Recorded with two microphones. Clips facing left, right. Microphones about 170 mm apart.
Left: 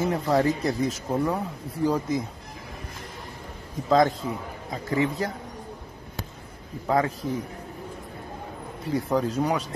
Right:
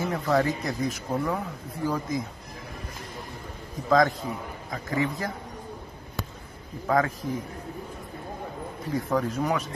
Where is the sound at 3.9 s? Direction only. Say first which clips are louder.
Left 1 dB; 25° left (ahead or behind).